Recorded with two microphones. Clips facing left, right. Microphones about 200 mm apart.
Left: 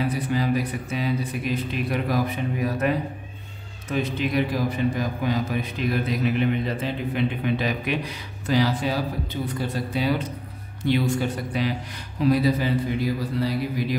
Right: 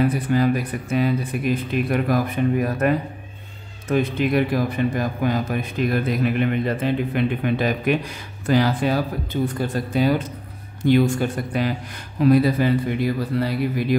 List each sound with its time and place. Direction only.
0.0 s a man's voice: 50° right (ahead or behind)
3.9 s a man's voice: 55° right (ahead or behind)